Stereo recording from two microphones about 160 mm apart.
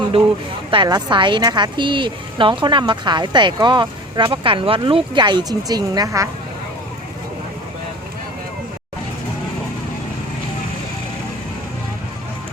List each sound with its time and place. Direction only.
0.7 s a woman's voice: 30° right (ahead or behind)